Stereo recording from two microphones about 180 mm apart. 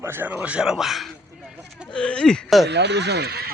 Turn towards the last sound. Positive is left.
turn(degrees=-60)  # may be behind; listen again after turning